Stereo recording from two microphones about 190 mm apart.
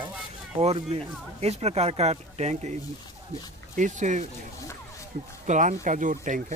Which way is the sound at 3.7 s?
40° right (ahead or behind).